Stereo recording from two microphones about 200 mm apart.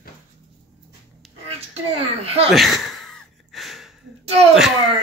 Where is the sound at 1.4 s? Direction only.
30° right (ahead or behind).